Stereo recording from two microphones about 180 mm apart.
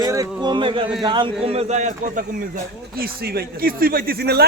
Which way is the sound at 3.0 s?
60° right (ahead or behind).